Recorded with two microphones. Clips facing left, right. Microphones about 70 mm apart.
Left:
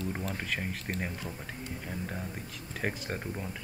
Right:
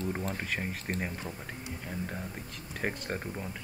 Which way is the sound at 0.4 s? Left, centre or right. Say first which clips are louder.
Even; centre.